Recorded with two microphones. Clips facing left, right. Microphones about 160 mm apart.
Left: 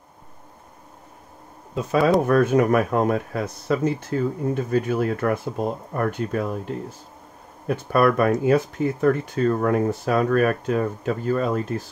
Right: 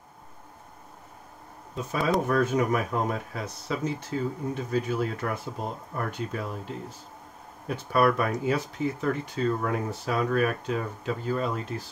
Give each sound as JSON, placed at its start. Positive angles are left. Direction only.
{"t": 2.2, "sound": "speech", "side_deg": 60}
{"t": 7.6, "sound": "speech", "side_deg": 50}